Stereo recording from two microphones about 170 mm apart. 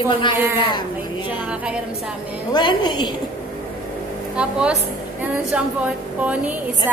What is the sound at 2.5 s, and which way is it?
Speech, 25° left (ahead or behind).